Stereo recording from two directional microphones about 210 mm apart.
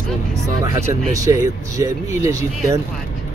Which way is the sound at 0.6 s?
15° right (ahead or behind).